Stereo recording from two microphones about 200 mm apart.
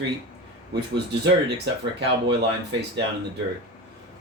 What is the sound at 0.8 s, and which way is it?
Speech, 55° right (ahead or behind).